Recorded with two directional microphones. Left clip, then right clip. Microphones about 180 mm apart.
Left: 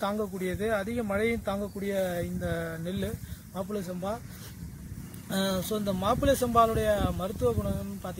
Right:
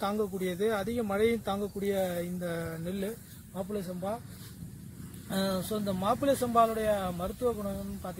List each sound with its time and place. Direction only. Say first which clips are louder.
0.0 s speech: left 1 dB; 50° right (ahead or behind)
5.3 s speech: left 2 dB; centre (ahead or behind)